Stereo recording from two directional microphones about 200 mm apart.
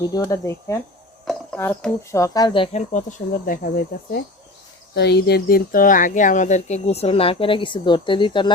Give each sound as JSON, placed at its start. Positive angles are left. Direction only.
{"t": 0.0, "sound": "speech", "side_deg": 20}
{"t": 1.2, "sound": "a sound", "side_deg": 0}
{"t": 1.5, "sound": "speech", "side_deg": 10}